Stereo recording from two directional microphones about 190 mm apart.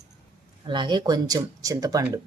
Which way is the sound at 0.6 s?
25° right (ahead or behind).